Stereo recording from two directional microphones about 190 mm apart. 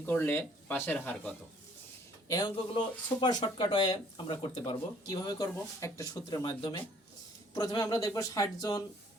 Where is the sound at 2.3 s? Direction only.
20° left (ahead or behind).